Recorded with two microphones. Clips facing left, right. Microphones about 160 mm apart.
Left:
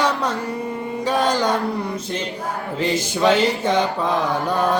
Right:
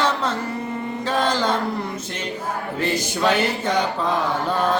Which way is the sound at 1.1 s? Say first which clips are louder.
Left 2 dB; 10° left (ahead or behind).